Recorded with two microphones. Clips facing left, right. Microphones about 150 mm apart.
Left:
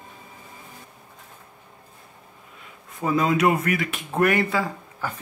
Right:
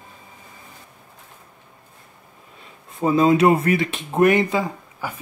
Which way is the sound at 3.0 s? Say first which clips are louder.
Right 5 dB; 25° right (ahead or behind).